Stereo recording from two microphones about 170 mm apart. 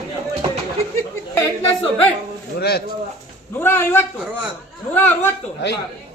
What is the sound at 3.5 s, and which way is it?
A woman's voice, 15° left (ahead or behind).